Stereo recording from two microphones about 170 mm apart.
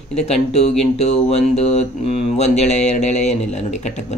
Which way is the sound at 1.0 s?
40° left (ahead or behind).